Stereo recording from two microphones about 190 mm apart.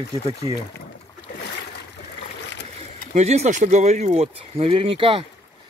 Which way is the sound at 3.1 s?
35° right (ahead or behind).